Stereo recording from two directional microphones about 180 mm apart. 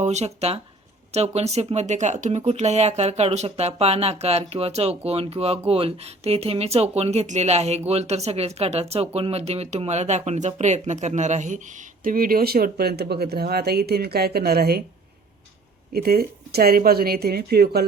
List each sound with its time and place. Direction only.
0.0 s speech: 40° right (ahead or behind); by 14.8 s 60° right (ahead or behind)
15.9 s speech: 60° right (ahead or behind)